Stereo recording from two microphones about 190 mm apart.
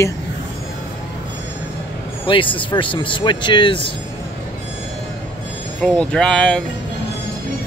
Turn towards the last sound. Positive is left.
turn(degrees=5)  # may be behind; listen again after turning